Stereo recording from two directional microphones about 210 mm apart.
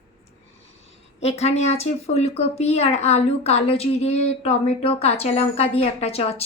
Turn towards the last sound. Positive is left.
turn(degrees=30)  # may be behind; listen again after turning